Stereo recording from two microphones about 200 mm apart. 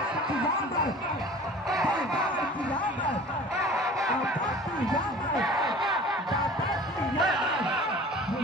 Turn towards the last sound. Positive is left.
turn(degrees=-5)  # may be behind; listen again after turning